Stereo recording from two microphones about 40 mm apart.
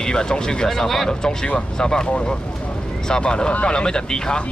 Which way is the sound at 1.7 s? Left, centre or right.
Centre.